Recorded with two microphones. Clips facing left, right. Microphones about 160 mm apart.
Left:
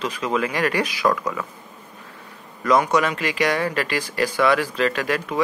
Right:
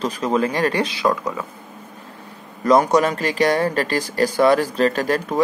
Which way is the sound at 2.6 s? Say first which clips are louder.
Right 3 dB; 35° right (ahead or behind).